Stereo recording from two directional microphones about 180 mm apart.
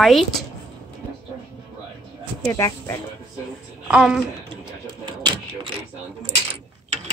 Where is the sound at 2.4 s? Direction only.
15° left (ahead or behind).